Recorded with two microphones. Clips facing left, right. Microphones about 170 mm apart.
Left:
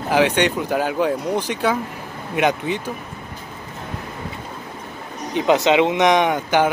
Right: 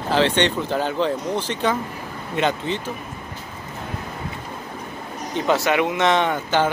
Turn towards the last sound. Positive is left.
turn(degrees=15)  # may be behind; listen again after turning